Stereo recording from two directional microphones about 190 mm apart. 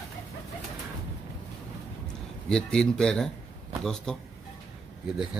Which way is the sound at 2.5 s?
5° left (ahead or behind).